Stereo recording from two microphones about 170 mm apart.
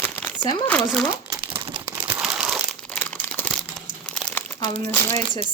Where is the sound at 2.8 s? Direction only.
10° left (ahead or behind).